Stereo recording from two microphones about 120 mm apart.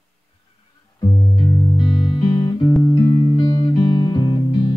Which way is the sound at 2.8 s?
25° left (ahead or behind).